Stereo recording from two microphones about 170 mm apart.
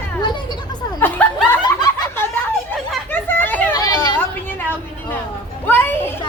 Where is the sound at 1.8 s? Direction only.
15° left (ahead or behind).